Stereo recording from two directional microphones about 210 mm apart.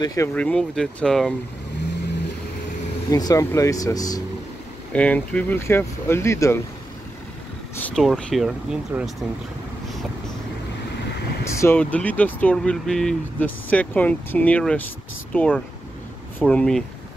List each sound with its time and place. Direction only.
0.0 s speech: 15° left (ahead or behind)
0.3 s speech: 5° left (ahead or behind)
3.1 s speech: 15° left (ahead or behind)
4.9 s speech: 5° left (ahead or behind)
7.8 s speech: centre (ahead or behind)
11.4 s speech: 10° left (ahead or behind)